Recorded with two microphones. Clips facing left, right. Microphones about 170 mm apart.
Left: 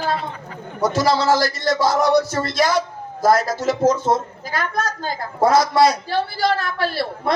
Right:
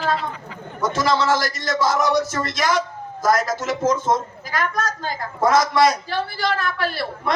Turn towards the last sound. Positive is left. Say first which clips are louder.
# left 2 dB
turn(degrees=30)  # may be behind; listen again after turning